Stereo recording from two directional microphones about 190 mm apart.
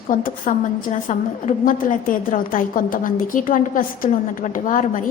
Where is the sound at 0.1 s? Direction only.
45° left (ahead or behind).